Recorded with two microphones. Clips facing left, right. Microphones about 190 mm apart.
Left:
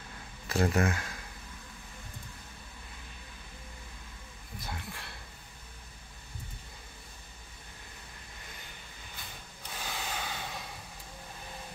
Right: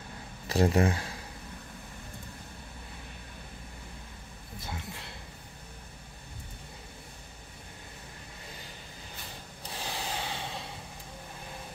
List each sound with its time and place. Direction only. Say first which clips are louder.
0.5 s speech: right 3 dB; 35° right (ahead or behind)
4.6 s a sound: right 1 dB; 20° right (ahead or behind)
9.7 s snort: right 2 dB; 30° right (ahead or behind)